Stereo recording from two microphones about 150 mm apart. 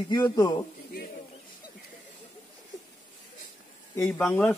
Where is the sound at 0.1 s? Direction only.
25° left (ahead or behind).